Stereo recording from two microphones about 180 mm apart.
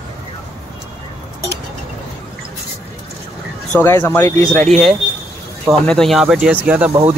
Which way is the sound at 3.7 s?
10° left (ahead or behind).